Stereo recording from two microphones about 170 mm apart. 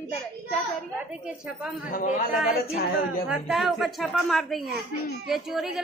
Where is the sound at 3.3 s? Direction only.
Centre (ahead or behind).